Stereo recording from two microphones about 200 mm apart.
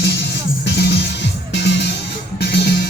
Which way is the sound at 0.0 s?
55° left (ahead or behind).